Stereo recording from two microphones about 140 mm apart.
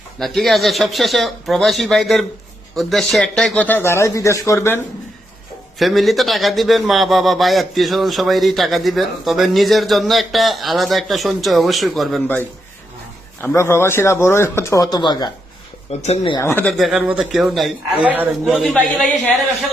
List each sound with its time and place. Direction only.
0.2 s a man's voice: centre (ahead or behind); by 4.8 s 20° left (ahead or behind)
5.8 s a man's voice: centre (ahead or behind)
13.4 s speech: 15° left (ahead or behind)
16.0 s speech: 45° left (ahead or behind)
16.4 s speech: 15° left (ahead or behind)
16.6 s a man's voice: centre (ahead or behind)
18.9 s a man's voice: 5° left (ahead or behind)